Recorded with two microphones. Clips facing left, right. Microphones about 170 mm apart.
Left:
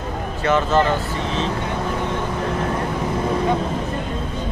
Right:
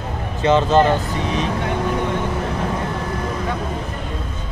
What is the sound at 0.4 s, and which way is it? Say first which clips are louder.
Speech: right 3 dB; 20° right (ahead or behind).